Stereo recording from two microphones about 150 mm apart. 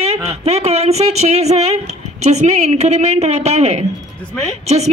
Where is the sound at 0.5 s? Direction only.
45° right (ahead or behind).